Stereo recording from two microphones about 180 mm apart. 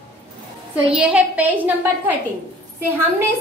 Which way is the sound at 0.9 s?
5° right (ahead or behind).